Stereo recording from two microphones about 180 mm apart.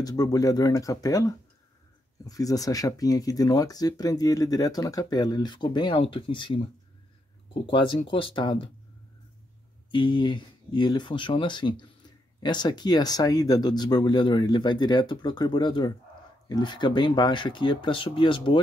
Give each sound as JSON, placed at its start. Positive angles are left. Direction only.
{"t": 0.0, "sound": "speech", "side_deg": 20}
{"t": 9.8, "sound": "speech", "side_deg": 25}